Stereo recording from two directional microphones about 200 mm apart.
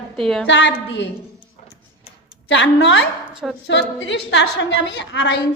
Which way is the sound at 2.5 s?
65° left (ahead or behind).